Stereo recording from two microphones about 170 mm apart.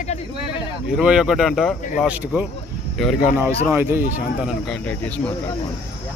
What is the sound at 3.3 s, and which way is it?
Music, 10° right (ahead or behind).